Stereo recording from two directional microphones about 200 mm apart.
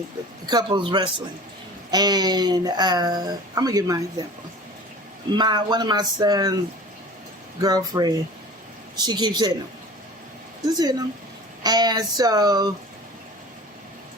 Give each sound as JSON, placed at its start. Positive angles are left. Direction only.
{"t": 0.4, "sound": "speech", "side_deg": -20}
{"t": 5.3, "sound": "speech", "side_deg": -20}
{"t": 7.6, "sound": "speech", "side_deg": -20}
{"t": 10.7, "sound": "speech", "side_deg": -20}